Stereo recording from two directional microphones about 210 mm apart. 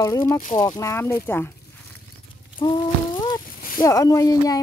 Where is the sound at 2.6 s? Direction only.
20° left (ahead or behind).